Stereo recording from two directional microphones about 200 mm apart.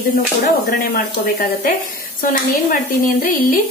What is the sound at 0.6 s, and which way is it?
A woman's voice, 45° left (ahead or behind).